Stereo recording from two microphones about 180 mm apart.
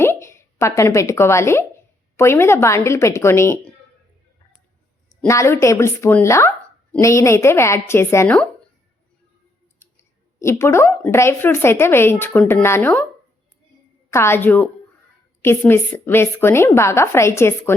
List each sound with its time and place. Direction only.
0.0 s a woman's voice: 15° left (ahead or behind)
5.3 s a woman's voice: 15° left (ahead or behind)
10.4 s a woman's voice: 15° left (ahead or behind)
14.1 s a woman's voice: 15° left (ahead or behind)